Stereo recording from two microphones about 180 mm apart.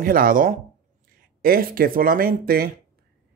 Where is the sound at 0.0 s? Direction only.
50° right (ahead or behind).